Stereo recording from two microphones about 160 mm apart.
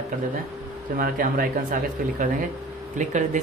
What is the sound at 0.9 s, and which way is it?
A woman's voice, 60° right (ahead or behind).